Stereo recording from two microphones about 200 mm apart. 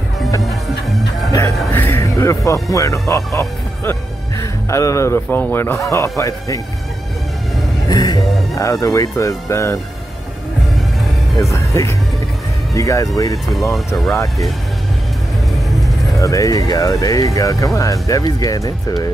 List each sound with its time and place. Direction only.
1.7 s speech: 10° left (ahead or behind)
4.4 s speech: 15° left (ahead or behind)
7.9 s music: 20° left (ahead or behind)
8.5 s speech: 15° left (ahead or behind)
11.3 s speech: 15° left (ahead or behind)
13.7 s speech: centre (ahead or behind)
16.2 s speech: 15° left (ahead or behind)